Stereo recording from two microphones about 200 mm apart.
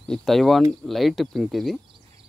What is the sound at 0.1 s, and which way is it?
Speech, centre (ahead or behind).